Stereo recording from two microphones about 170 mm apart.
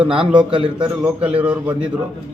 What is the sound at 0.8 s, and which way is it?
Speech, 5° right (ahead or behind).